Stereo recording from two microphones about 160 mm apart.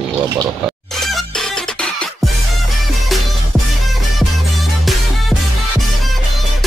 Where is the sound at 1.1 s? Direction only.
Centre (ahead or behind).